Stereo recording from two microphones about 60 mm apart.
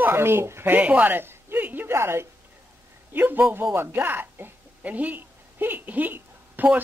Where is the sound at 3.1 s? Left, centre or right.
Right.